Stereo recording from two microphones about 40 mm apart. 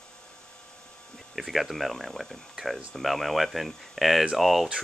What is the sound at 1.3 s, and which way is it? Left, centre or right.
Speech, centre.